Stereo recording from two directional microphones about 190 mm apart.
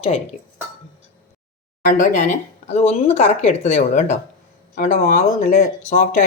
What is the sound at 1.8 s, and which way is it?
Speech, 45° left (ahead or behind).